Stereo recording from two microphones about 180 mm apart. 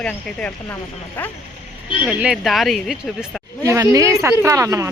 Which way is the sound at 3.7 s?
20° right (ahead or behind).